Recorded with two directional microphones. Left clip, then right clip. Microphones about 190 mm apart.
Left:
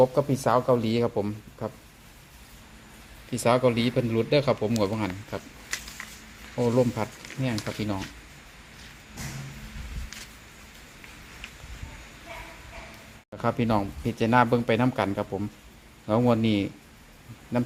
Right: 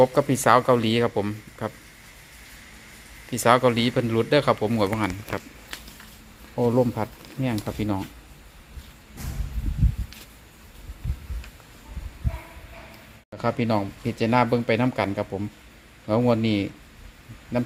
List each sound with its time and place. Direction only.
0.0 s speech: 10° right (ahead or behind)
3.2 s speech: centre (ahead or behind)
6.6 s speech: 15° right (ahead or behind)
13.3 s speech: 5° right (ahead or behind)